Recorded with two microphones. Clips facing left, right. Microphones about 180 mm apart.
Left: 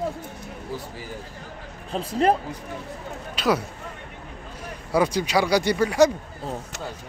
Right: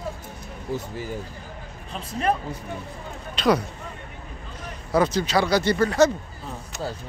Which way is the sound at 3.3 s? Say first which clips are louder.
Right 2 dB; 5° left (ahead or behind).